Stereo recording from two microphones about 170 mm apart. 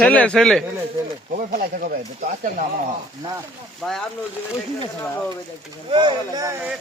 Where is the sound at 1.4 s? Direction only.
55° right (ahead or behind).